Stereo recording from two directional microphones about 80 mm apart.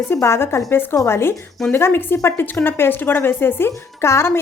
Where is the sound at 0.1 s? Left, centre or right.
Left.